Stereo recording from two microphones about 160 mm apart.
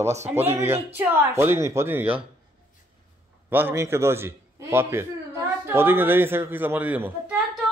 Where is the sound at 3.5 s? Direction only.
15° right (ahead or behind).